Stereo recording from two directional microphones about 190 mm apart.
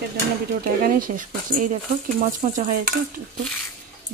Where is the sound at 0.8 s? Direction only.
45° right (ahead or behind).